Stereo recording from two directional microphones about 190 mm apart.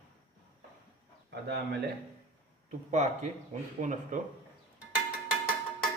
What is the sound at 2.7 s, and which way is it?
Speech, 40° right (ahead or behind).